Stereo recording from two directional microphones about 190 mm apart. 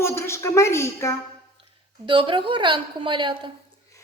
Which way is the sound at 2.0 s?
25° right (ahead or behind).